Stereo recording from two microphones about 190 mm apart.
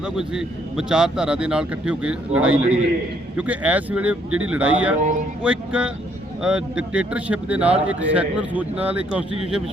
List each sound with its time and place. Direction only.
0.0 s a man's voice: 5° right (ahead or behind)
4.9 s speech: 40° right (ahead or behind)
5.4 s a man's voice: 5° right (ahead or behind)